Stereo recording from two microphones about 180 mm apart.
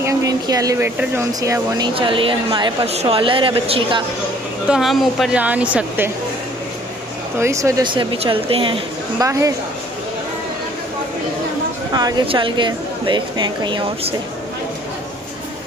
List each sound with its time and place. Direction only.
0.0 s speech: 20° right (ahead or behind)
2.0 s a woman's voice: 30° right (ahead or behind)
4.6 s speech: centre (ahead or behind)
7.3 s a woman's voice: 15° right (ahead or behind); by 8.8 s 30° right (ahead or behind)
9.2 s speech: 15° right (ahead or behind)
11.9 s a woman's voice: 20° right (ahead or behind)